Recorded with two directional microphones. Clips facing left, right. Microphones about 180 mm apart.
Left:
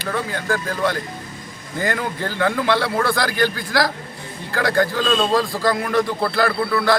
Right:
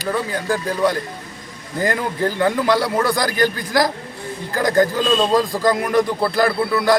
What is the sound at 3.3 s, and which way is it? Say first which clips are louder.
Speech: right 2 dB; 40° right (ahead or behind).